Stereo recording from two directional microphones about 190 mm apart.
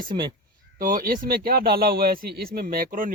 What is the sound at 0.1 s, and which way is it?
Speech, 20° right (ahead or behind).